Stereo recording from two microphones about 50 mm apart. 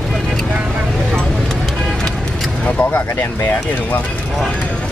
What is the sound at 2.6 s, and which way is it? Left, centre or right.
Speech, left.